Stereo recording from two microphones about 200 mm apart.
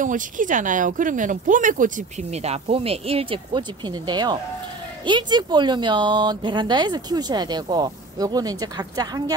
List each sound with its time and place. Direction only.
0.0 s speech: 40° right (ahead or behind); by 9.2 s 20° right (ahead or behind)